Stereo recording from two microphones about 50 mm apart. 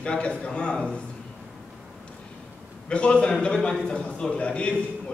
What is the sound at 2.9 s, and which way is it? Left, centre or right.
A man's voice, left.